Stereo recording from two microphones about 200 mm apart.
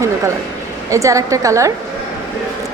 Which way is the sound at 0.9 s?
15° right (ahead or behind).